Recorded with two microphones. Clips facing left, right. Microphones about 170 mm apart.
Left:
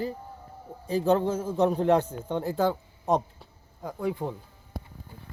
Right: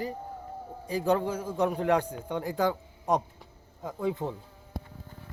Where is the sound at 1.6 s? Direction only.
30° left (ahead or behind).